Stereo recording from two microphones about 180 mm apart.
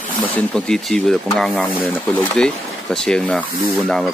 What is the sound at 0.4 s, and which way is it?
Speech, 5° left (ahead or behind).